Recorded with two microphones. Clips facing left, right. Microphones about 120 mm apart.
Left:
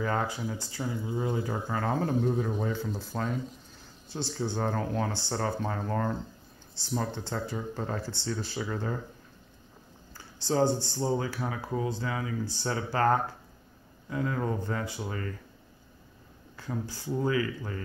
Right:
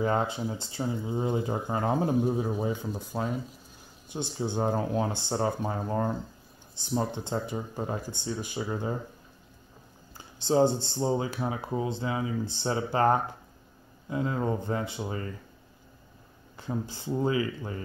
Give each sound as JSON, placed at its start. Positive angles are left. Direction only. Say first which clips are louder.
{"t": 0.0, "sound": "speech", "louder": "right 3 dB", "side_deg": -20}
{"t": 10.1, "sound": "speech", "louder": "right 3 dB", "side_deg": -20}
{"t": 16.5, "sound": "speech", "louder": "right 2 dB", "side_deg": -20}